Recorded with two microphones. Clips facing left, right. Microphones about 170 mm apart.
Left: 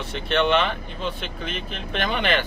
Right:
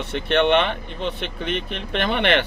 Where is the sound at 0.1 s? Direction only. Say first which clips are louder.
Right 3 dB; 60° right (ahead or behind).